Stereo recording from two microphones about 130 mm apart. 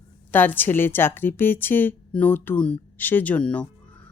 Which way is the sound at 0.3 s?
15° left (ahead or behind).